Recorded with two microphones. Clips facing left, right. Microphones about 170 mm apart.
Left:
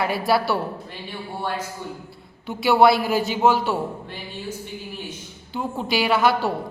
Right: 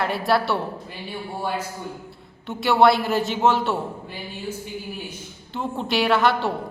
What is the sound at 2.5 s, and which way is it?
A man's voice, centre (ahead or behind).